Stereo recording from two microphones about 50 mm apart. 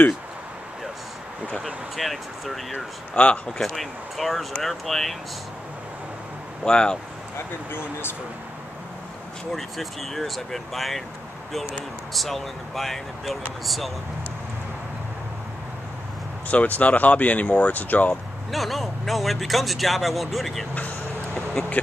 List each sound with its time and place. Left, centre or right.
2.0 s speech: centre
3.2 s speech: left
3.6 s speech: centre
6.6 s speech: centre
7.3 s speech: left
9.5 s speech: centre
12.1 s speech: centre
16.4 s speech: left
18.5 s speech: centre
21.6 s vehicle: centre